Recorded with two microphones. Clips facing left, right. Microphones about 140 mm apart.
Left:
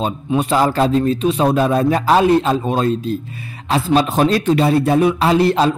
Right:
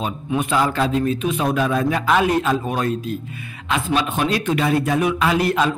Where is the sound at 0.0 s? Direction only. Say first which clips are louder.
Left 4 dB; 30° left (ahead or behind).